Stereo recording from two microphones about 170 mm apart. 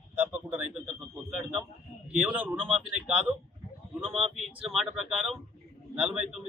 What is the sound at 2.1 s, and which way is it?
Speech, 10° right (ahead or behind).